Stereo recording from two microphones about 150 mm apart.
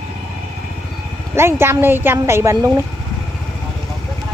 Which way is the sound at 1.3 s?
15° right (ahead or behind).